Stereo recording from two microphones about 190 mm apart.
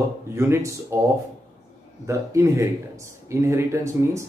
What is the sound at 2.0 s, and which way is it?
Speech, 15° right (ahead or behind).